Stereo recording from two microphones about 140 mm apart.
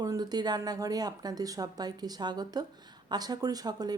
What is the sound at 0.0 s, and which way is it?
Speech, 30° right (ahead or behind).